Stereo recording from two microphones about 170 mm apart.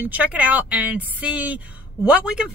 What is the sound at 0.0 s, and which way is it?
A woman's voice, 10° right (ahead or behind).